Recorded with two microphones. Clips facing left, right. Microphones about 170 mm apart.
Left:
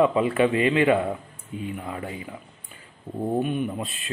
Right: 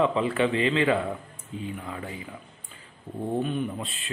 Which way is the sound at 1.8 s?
30° left (ahead or behind).